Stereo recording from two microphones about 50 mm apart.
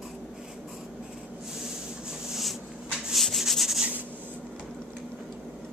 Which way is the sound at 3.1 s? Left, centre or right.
Centre.